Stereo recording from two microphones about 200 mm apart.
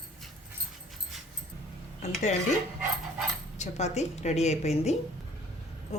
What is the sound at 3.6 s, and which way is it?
A woman's voice, 35° left (ahead or behind).